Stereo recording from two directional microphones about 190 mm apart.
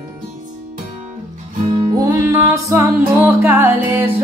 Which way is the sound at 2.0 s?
15° right (ahead or behind).